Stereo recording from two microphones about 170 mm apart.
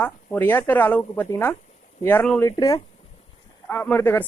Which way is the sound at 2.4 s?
20° left (ahead or behind).